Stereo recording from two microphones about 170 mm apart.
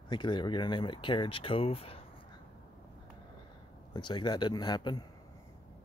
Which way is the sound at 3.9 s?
25° left (ahead or behind).